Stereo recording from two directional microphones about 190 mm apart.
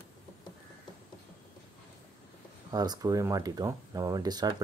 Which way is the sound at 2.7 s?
20° right (ahead or behind).